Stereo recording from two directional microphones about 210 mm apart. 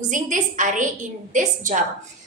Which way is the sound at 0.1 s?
35° right (ahead or behind).